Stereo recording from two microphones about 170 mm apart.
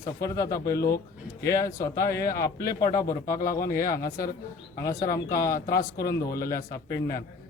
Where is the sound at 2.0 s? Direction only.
60° left (ahead or behind).